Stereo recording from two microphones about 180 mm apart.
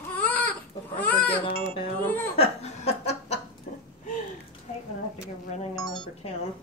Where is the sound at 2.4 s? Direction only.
35° left (ahead or behind).